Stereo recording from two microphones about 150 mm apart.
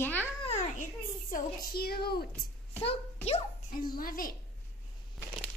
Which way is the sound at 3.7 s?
75° left (ahead or behind).